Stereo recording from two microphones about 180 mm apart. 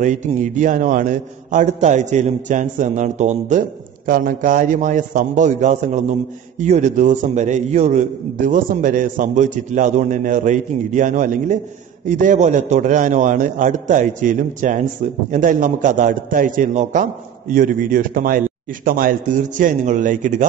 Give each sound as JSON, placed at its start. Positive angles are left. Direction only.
{"t": 0.0, "sound": "a man's voice", "side_deg": -45}